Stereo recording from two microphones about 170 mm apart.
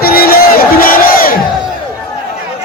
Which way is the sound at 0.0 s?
60° left (ahead or behind).